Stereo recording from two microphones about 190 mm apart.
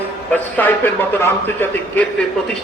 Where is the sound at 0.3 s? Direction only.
10° left (ahead or behind).